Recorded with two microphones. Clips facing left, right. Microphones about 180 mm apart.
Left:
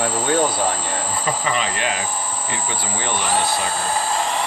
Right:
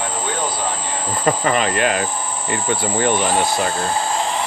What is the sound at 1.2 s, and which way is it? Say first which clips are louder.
Speech: right 7 dB; 55° right (ahead or behind).